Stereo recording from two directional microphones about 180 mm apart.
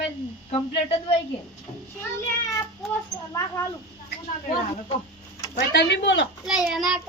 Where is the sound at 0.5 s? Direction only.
30° left (ahead or behind).